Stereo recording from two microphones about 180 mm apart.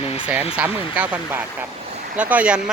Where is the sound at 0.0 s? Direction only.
35° left (ahead or behind).